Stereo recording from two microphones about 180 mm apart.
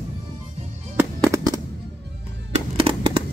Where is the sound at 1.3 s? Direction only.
15° right (ahead or behind).